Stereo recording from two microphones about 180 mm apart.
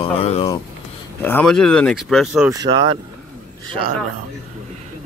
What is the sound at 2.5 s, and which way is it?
Speech, 20° right (ahead or behind).